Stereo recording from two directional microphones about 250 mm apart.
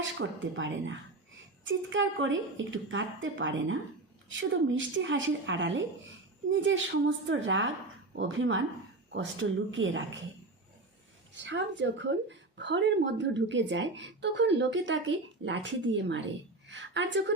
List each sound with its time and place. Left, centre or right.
0.0 s a woman's voice: right
11.3 s a woman's voice: right